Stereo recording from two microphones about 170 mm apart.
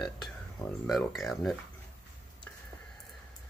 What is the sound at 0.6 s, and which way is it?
Speech, centre (ahead or behind).